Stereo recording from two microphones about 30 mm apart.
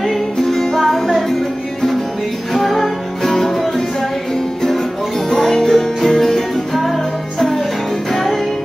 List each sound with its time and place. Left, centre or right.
0.5 s music: centre
2.5 s music: centre
5.3 s music: centre